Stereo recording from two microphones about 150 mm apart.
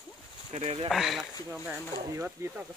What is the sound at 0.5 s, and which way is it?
Speech, 45° right (ahead or behind).